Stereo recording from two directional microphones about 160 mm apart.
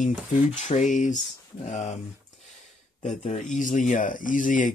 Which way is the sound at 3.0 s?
45° left (ahead or behind).